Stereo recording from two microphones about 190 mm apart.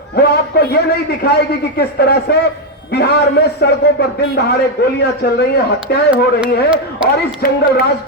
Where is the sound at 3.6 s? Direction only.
55° left (ahead or behind).